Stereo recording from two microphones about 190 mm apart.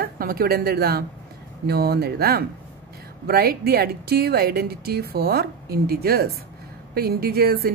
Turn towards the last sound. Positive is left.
turn(degrees=-55)  # may be behind; listen again after turning